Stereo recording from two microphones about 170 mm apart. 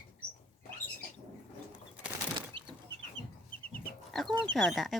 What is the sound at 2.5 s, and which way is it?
Chicken, 30° right (ahead or behind).